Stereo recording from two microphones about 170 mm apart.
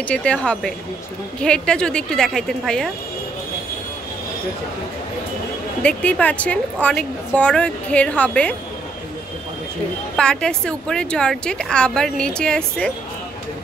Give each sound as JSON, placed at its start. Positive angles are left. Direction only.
{"t": 0.1, "sound": "a woman's voice", "side_deg": 5}
{"t": 5.8, "sound": "a woman's voice", "side_deg": 5}
{"t": 10.1, "sound": "a woman's voice", "side_deg": 5}